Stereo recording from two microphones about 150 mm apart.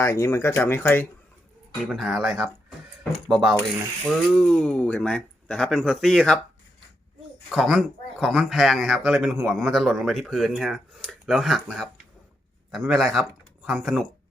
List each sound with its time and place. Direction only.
0.0 s speech: 20° left (ahead or behind)
1.8 s speech: centre (ahead or behind)
7.5 s speech: centre (ahead or behind)
12.9 s speech: centre (ahead or behind)